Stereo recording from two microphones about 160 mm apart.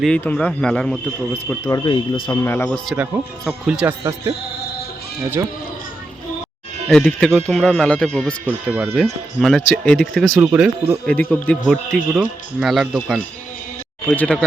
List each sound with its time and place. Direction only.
0.0 s a man's voice: 5° left (ahead or behind)
1.6 s speech: 25° left (ahead or behind)
2.3 s speech: 15° left (ahead or behind)
2.6 s a man's voice: centre (ahead or behind)
6.8 s a man's voice: 5° left (ahead or behind)
8.4 s a man's voice: 10° right (ahead or behind)
10.4 s speech: 15° right (ahead or behind)
11.0 s speech: 10° left (ahead or behind)
12.1 s a man's voice: 5° right (ahead or behind)